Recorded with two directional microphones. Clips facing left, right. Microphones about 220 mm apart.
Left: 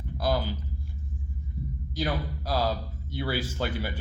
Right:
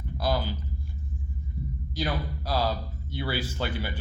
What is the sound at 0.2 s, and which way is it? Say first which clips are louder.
Speech: left 1 dB; 50° left (ahead or behind).